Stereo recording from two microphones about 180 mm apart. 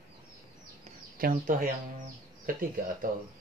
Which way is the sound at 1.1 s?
50° right (ahead or behind).